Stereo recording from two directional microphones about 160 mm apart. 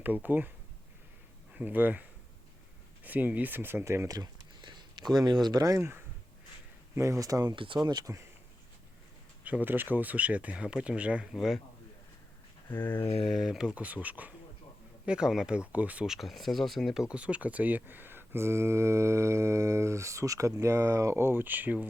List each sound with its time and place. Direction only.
0.0 s speech: 10° right (ahead or behind)
1.5 s speech: 10° right (ahead or behind)
9.4 s speech: 10° right (ahead or behind)
12.6 s a sound: 15° left (ahead or behind)
13.2 s speech: centre (ahead or behind)